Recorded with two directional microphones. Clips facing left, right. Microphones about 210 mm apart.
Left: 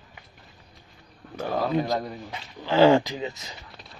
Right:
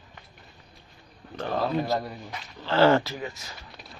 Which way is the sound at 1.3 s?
10° left (ahead or behind).